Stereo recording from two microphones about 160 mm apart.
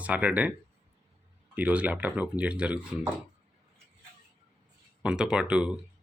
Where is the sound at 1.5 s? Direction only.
10° right (ahead or behind).